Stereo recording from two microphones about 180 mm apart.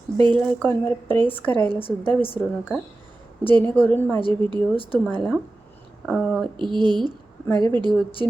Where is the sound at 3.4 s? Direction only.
10° left (ahead or behind).